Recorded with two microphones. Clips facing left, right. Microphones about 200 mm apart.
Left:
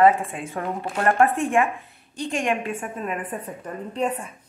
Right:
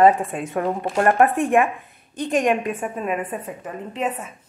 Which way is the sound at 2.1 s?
20° right (ahead or behind).